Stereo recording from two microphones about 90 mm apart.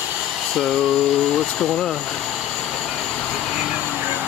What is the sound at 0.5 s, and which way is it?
Humming, 5° left (ahead or behind).